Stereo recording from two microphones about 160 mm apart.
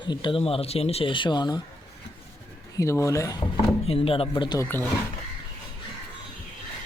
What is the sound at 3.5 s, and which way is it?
Speech, 35° left (ahead or behind).